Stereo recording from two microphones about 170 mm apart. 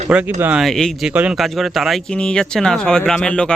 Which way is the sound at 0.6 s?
Centre (ahead or behind).